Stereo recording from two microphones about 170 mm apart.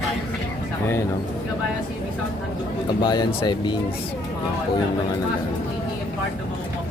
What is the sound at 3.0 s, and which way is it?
Speech, 25° left (ahead or behind).